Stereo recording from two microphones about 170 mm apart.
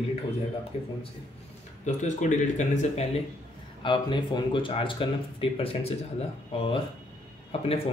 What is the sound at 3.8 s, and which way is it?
Speech, 30° left (ahead or behind).